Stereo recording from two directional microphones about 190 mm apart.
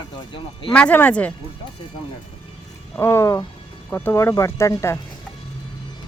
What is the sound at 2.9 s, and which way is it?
Speech, 15° left (ahead or behind).